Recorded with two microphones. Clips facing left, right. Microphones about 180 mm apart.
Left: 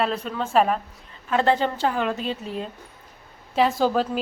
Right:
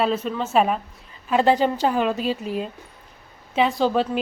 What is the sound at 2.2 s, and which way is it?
Speech, 25° left (ahead or behind).